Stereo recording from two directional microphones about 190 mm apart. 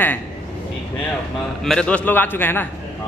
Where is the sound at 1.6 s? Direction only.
5° left (ahead or behind).